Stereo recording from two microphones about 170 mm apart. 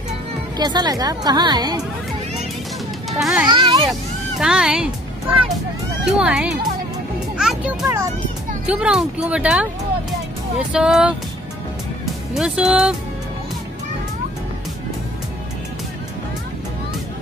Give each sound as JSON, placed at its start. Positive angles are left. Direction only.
{"t": 0.6, "sound": "a woman's voice", "side_deg": -25}
{"t": 3.1, "sound": "a child's voice", "side_deg": 0}
{"t": 3.4, "sound": "a woman's voice", "side_deg": -30}
{"t": 4.4, "sound": "speech", "side_deg": -5}
{"t": 6.0, "sound": "speech", "side_deg": -5}
{"t": 7.3, "sound": "music", "side_deg": -5}
{"t": 7.8, "sound": "a woman's voice", "side_deg": -20}
{"t": 8.6, "sound": "speech", "side_deg": -5}
{"t": 10.7, "sound": "speech", "side_deg": -5}
{"t": 12.4, "sound": "speech", "side_deg": -5}